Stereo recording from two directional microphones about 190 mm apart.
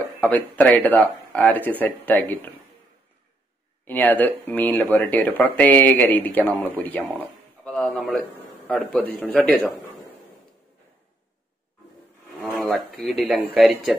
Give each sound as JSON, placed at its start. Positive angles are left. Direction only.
{"t": 0.2, "sound": "speech", "side_deg": 10}
{"t": 3.8, "sound": "a man's voice", "side_deg": 10}
{"t": 12.5, "sound": "speech", "side_deg": 0}